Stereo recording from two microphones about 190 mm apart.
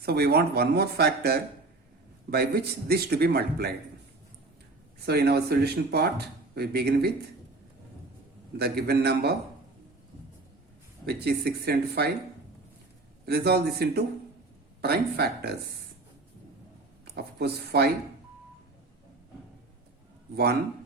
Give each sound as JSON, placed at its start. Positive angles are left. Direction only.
{"t": 0.0, "sound": "speech", "side_deg": -55}
{"t": 5.0, "sound": "speech", "side_deg": -55}
{"t": 8.5, "sound": "speech", "side_deg": -55}
{"t": 11.0, "sound": "speech", "side_deg": -60}
{"t": 13.2, "sound": "speech", "side_deg": -60}
{"t": 17.2, "sound": "speech", "side_deg": -55}
{"t": 20.3, "sound": "speech", "side_deg": -55}